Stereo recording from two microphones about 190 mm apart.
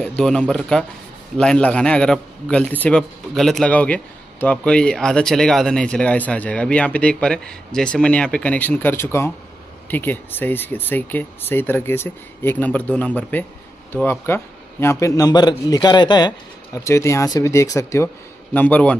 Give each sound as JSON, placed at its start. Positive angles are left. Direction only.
{"t": 0.0, "sound": "a man's voice", "side_deg": 5}